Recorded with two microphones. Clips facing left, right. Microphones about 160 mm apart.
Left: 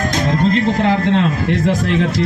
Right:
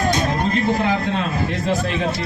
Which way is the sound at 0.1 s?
90° left.